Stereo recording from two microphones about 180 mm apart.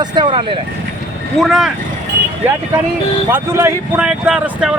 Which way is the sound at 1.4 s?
Centre (ahead or behind).